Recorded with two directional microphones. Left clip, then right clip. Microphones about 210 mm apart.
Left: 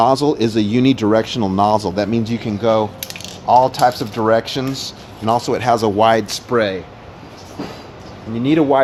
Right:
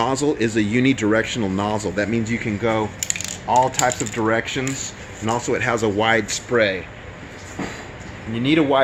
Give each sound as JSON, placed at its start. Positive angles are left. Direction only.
{"t": 0.0, "sound": "speech", "side_deg": 40}
{"t": 8.4, "sound": "speech", "side_deg": 25}